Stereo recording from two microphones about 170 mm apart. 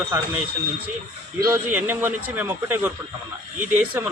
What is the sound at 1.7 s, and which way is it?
A man's voice, 10° right (ahead or behind).